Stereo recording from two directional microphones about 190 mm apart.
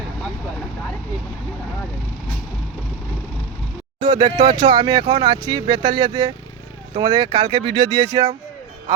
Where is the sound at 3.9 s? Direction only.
25° right (ahead or behind).